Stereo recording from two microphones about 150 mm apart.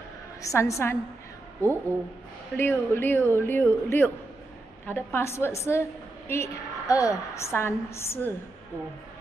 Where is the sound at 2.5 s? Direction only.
15° left (ahead or behind).